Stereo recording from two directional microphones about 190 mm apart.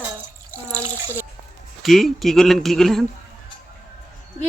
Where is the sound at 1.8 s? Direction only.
Centre (ahead or behind).